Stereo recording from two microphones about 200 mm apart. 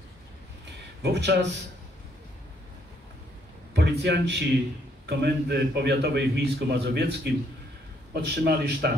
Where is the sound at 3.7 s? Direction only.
55° right (ahead or behind).